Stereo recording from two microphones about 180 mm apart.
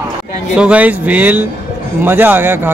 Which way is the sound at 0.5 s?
5° right (ahead or behind).